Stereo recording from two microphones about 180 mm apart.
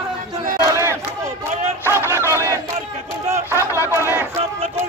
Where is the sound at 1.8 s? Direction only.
15° right (ahead or behind).